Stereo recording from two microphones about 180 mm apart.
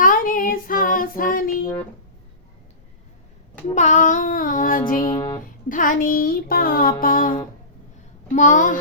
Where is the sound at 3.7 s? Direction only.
45° left (ahead or behind).